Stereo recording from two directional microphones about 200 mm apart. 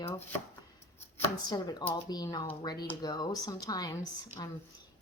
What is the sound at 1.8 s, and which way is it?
Speech, 20° left (ahead or behind).